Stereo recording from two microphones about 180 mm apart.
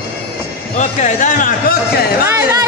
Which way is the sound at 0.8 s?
45° left (ahead or behind).